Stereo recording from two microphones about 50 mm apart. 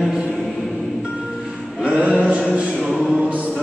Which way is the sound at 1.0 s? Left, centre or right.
Centre.